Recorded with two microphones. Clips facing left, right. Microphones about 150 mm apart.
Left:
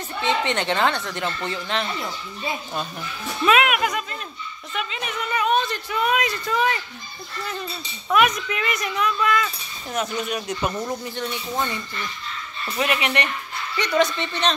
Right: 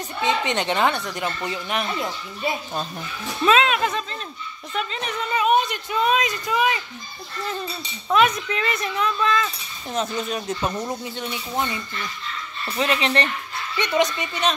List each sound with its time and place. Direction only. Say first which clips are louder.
0.2 s speech: even; 15° right (ahead or behind)
3.4 s speech: right 1 dB; 30° right (ahead or behind)
5.4 s speech: right 2 dB; 20° right (ahead or behind)
8.1 s speech: right 1 dB; 30° right (ahead or behind)
11.1 s speech: even; 15° right (ahead or behind)
12.7 s speech: right 1 dB; 25° right (ahead or behind); by 14.5 s 10° right (ahead or behind)